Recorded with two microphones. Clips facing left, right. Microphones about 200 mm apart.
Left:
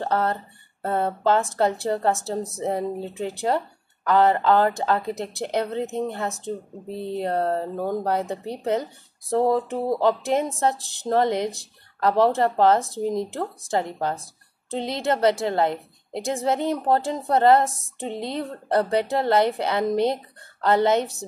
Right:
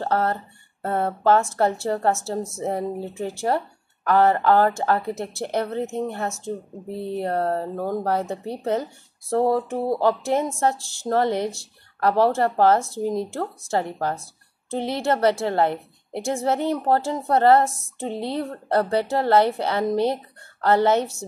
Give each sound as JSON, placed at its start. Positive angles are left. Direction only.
{"t": 0.0, "sound": "speech", "side_deg": 20}